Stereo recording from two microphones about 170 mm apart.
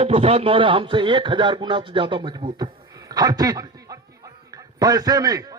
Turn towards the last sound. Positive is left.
turn(degrees=-20)  # may be behind; listen again after turning